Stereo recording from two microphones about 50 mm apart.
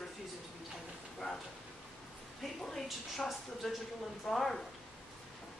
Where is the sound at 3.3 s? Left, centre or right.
Centre.